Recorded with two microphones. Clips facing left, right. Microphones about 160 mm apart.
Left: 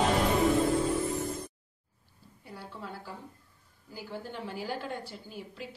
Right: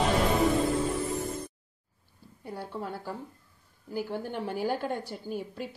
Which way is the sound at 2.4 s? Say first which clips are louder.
Right 7 dB; 45° right (ahead or behind).